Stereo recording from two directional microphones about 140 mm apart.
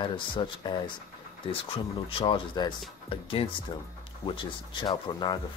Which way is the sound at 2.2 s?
35° left (ahead or behind).